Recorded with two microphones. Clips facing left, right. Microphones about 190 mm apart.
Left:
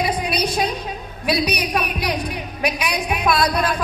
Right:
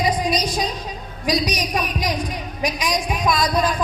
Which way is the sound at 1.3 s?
60° left (ahead or behind).